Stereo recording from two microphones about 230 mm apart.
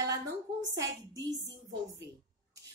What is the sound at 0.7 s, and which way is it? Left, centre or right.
Speech, centre.